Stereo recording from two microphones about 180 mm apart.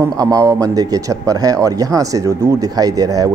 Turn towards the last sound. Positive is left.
turn(degrees=-20)  # may be behind; listen again after turning